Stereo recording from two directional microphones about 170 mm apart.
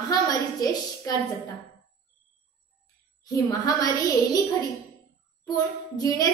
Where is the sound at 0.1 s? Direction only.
20° left (ahead or behind).